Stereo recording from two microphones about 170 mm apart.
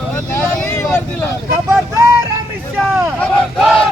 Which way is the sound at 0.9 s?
5° left (ahead or behind).